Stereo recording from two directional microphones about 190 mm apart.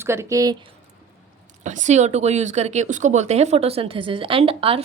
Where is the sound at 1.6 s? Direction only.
40° right (ahead or behind).